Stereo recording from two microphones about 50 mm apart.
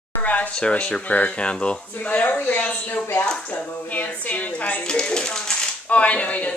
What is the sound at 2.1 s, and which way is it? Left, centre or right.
Speech, left.